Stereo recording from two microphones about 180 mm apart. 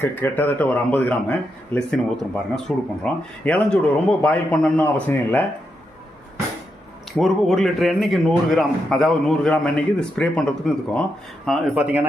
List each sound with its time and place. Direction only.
0.0 s a man's voice: 10° left (ahead or behind)
7.2 s a man's voice: centre (ahead or behind)